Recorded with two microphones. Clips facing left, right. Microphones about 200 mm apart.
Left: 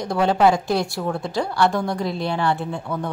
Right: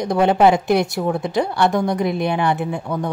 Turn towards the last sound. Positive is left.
turn(degrees=-15)  # may be behind; listen again after turning